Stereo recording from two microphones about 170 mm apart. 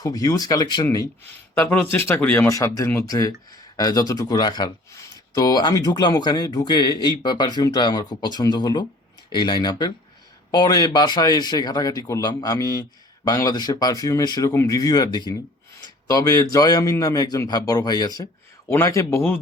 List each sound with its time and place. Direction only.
0.0 s speech: 20° left (ahead or behind)